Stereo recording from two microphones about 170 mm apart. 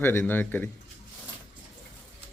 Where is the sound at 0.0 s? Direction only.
10° left (ahead or behind).